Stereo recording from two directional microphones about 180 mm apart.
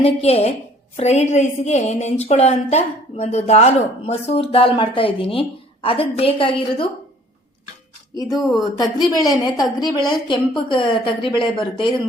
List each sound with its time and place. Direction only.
0.0 s a woman's voice: 35° left (ahead or behind)
8.8 s a woman's voice: 20° left (ahead or behind)